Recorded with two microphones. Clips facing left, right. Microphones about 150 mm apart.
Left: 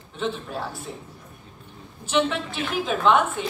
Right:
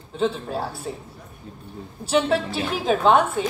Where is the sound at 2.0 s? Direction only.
35° right (ahead or behind).